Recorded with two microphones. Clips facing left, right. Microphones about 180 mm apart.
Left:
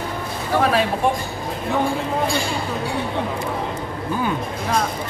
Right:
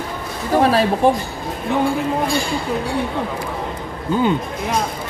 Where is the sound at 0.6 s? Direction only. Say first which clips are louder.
Right 4 dB; 35° right (ahead or behind).